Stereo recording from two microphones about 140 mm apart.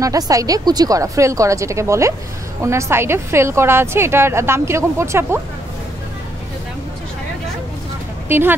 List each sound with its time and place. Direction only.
0.0 s a woman's voice: 25° right (ahead or behind)
8.3 s speech: 15° right (ahead or behind)